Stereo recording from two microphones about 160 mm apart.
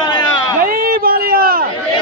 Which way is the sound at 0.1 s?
25° left (ahead or behind).